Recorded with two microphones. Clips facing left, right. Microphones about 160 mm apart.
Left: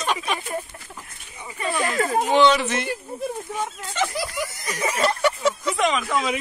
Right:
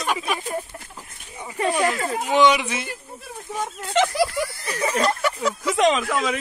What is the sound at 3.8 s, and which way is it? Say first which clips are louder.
Speech: right 10 dB; 80° right.